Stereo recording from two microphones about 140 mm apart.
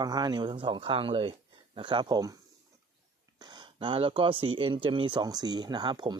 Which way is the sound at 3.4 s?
30° right (ahead or behind).